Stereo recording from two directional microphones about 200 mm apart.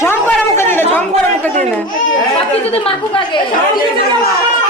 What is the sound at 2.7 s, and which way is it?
Speech, 25° left (ahead or behind).